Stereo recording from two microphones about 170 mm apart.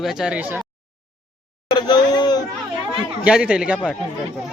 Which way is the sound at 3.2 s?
5° right (ahead or behind).